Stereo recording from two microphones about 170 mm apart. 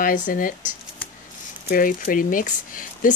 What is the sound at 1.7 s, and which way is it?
Speech, 55° left (ahead or behind).